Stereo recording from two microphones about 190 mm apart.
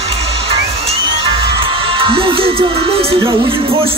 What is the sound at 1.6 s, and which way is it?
Music, 25° right (ahead or behind).